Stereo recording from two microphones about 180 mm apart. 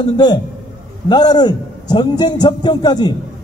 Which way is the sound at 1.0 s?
25° left (ahead or behind).